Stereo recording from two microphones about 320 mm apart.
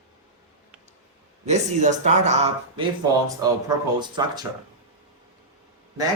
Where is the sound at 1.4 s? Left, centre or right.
Right.